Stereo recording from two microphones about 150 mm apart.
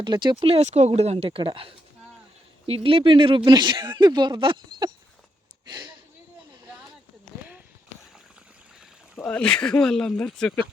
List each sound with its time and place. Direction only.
0.0 s speech: 30° right (ahead or behind)
0.5 s speech: 45° right (ahead or behind); by 5.9 s 30° right (ahead or behind)
9.1 s speech: 10° left (ahead or behind)